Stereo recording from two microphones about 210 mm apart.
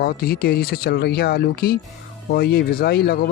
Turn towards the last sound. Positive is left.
turn(degrees=50)  # may be behind; listen again after turning